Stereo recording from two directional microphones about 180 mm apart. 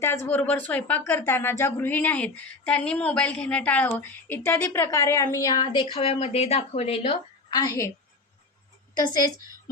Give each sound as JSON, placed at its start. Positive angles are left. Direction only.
{"t": 0.0, "sound": "speech", "side_deg": 15}
{"t": 7.5, "sound": "a woman's voice", "side_deg": 20}